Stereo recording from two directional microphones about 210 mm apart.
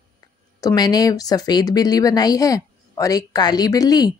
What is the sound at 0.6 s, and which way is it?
A woman's voice, 20° left (ahead or behind).